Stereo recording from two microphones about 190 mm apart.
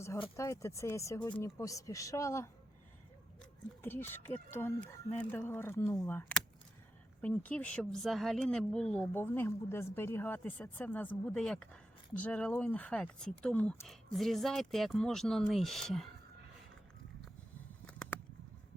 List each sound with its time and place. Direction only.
0.3 s speech: 15° left (ahead or behind)
3.8 s speech: 10° left (ahead or behind)
17.8 s a sound: 5° left (ahead or behind)